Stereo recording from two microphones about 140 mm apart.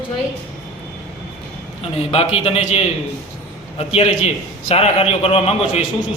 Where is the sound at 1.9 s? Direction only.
45° left (ahead or behind).